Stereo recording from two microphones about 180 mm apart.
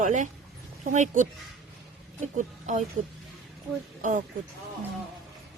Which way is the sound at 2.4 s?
45° right (ahead or behind).